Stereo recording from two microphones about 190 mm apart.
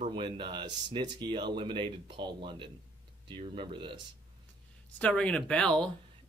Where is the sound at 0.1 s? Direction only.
25° right (ahead or behind).